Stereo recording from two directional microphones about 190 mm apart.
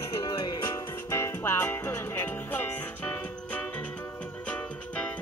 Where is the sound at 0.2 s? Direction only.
25° left (ahead or behind).